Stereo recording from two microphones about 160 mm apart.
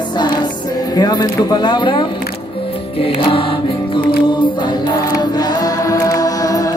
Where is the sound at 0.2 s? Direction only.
25° left (ahead or behind).